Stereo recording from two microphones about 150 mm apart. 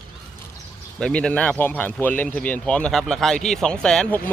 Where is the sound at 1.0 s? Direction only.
5° left (ahead or behind).